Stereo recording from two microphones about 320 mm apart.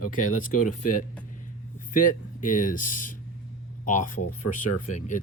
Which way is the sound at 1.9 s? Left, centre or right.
Left.